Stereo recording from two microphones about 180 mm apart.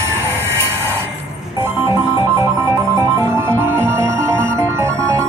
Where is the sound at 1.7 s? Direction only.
15° right (ahead or behind).